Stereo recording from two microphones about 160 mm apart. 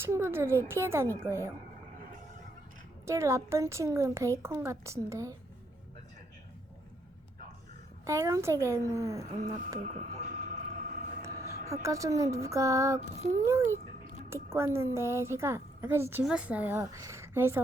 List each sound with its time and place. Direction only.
0.0 s a woman's voice: 15° right (ahead or behind)
3.1 s a woman's voice: 15° right (ahead or behind)
8.0 s a woman's voice: 20° right (ahead or behind)
9.8 s vehicle: 50° right (ahead or behind)
11.2 s a woman's voice: 20° right (ahead or behind)